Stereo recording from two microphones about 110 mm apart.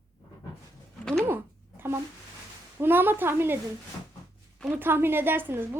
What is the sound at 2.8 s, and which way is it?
Speech, 20° right (ahead or behind).